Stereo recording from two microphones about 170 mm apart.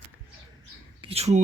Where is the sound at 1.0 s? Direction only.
40° right (ahead or behind).